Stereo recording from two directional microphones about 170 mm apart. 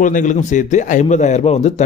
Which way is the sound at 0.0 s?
50° left (ahead or behind).